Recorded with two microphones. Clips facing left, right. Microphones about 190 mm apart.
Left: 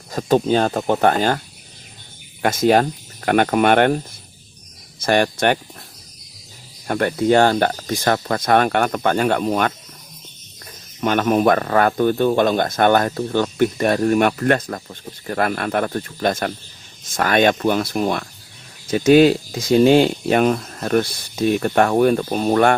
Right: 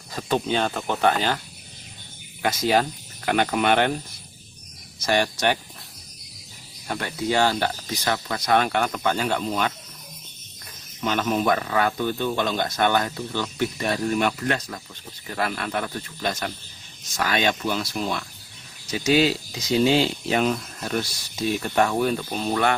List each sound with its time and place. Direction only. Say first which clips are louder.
0.1 s speech: left 7 dB; 45° left (ahead or behind)
2.4 s speech: left 6 dB; 50° left (ahead or behind)
6.8 s speech: left 9 dB; 55° left (ahead or behind)
11.0 s speech: left 7 dB; 55° left (ahead or behind)